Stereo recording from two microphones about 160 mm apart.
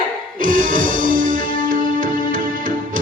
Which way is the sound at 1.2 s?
60° right (ahead or behind).